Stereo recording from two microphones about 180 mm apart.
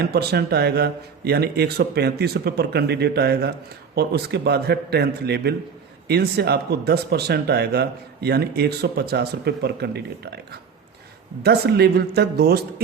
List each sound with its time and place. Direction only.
0.0 s speech: 60° right (ahead or behind)